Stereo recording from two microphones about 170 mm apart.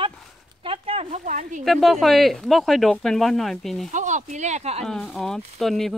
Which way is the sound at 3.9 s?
45° right (ahead or behind).